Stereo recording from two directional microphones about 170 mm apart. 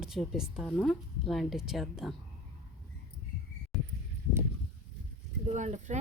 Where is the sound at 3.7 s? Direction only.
Centre (ahead or behind).